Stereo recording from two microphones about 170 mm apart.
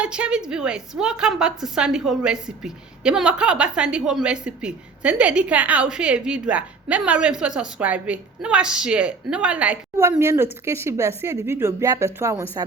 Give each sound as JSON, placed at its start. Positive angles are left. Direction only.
{"t": 0.0, "sound": "a woman's voice", "side_deg": -5}